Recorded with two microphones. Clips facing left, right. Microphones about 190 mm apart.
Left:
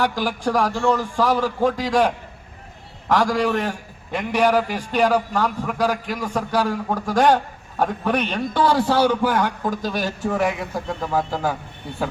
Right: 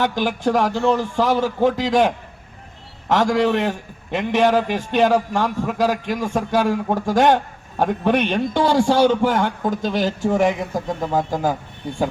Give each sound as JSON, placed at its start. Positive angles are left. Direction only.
{"t": 0.0, "sound": "a man's voice", "side_deg": -25}